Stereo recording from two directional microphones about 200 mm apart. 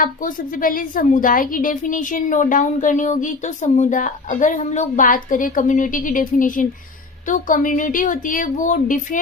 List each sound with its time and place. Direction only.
0.0 s a woman's voice: 45° left (ahead or behind)